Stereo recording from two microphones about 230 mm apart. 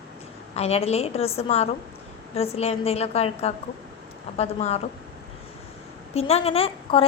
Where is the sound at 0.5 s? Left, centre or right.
Left.